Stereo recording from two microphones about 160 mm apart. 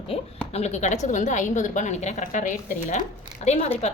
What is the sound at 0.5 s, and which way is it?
A woman's voice, 45° left (ahead or behind).